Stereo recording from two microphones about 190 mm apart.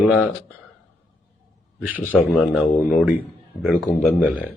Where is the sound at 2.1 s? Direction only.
10° left (ahead or behind).